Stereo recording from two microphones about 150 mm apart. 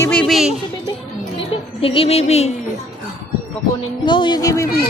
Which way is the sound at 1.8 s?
40° left (ahead or behind).